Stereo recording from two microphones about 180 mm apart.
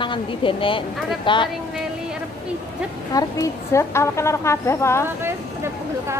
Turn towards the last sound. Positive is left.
turn(degrees=15)  # may be behind; listen again after turning